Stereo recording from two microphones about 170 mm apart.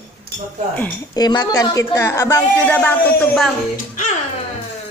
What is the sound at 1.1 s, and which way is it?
A woman's voice, 25° left (ahead or behind).